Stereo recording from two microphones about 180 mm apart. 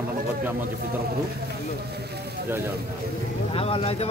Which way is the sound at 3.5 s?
30° left (ahead or behind).